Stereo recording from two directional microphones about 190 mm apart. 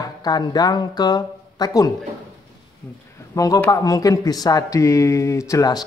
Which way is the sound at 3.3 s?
15° left (ahead or behind).